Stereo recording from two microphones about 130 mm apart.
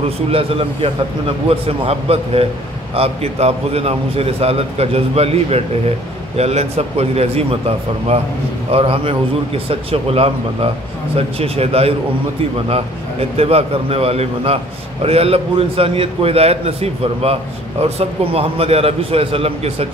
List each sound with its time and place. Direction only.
0.3 s a man's voice: 45° right (ahead or behind)